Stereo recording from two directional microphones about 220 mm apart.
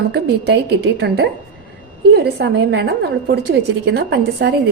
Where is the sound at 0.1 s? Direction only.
50° right (ahead or behind).